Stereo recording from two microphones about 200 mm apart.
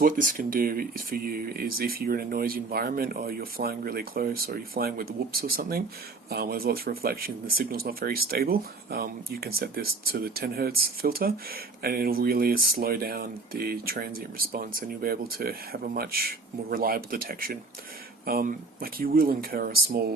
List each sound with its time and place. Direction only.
0.0 s speech: 45° right (ahead or behind)